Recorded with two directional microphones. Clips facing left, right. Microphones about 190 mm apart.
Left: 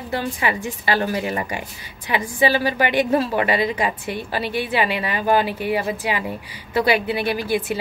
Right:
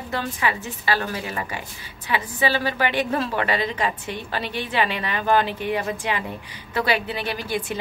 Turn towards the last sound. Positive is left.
turn(degrees=10)  # may be behind; listen again after turning